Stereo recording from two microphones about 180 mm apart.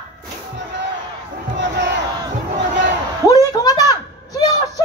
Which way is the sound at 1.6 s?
75° right (ahead or behind).